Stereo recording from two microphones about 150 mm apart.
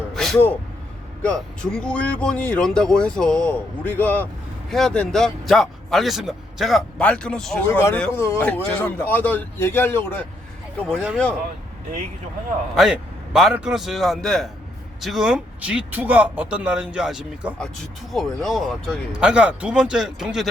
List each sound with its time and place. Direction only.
0.1 s a sound: centre (ahead or behind)
0.3 s speech: 15° left (ahead or behind)
7.7 s speech: 15° left (ahead or behind)
10.8 s speech: centre (ahead or behind)
12.7 s speech: 5° right (ahead or behind)